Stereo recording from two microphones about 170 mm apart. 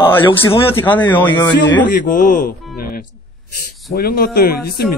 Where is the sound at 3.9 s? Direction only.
65° left (ahead or behind).